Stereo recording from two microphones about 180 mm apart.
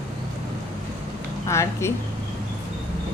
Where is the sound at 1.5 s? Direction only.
15° left (ahead or behind).